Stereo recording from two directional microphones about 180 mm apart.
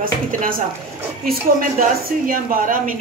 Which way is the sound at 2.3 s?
50° right (ahead or behind).